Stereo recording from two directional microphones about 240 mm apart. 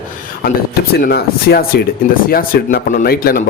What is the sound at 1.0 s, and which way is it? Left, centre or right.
A man's voice, left.